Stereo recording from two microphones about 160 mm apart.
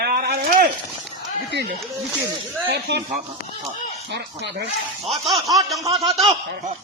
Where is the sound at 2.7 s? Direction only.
90° right.